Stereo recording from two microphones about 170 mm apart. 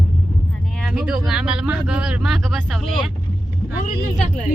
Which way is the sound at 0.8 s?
5° right (ahead or behind).